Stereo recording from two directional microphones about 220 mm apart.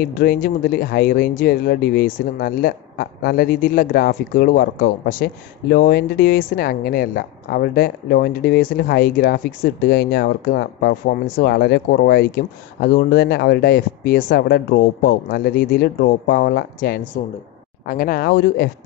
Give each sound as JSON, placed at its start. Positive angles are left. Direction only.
{"t": 0.0, "sound": "speech", "side_deg": 40}